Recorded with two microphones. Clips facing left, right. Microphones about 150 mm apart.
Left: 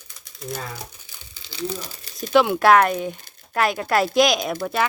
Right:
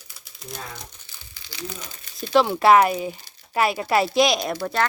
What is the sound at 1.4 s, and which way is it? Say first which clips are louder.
Crumpling: left 7 dB; 30° left (ahead or behind).